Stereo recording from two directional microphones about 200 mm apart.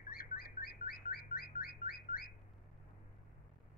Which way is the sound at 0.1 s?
45° left (ahead or behind).